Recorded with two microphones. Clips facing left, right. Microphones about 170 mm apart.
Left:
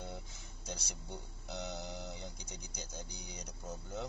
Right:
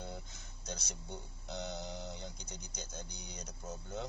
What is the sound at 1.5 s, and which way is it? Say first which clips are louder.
Speech: right 1 dB; 5° left (ahead or behind).